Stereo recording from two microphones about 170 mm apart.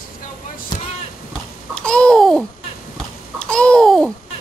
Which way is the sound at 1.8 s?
5° left (ahead or behind).